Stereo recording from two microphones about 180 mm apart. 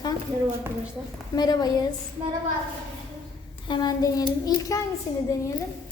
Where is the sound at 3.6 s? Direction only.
25° left (ahead or behind).